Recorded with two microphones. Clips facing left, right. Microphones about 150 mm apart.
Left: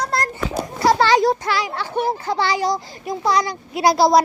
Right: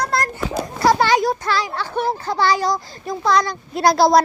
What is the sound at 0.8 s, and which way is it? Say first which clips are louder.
Children playing: left 1 dB; 30° left (ahead or behind).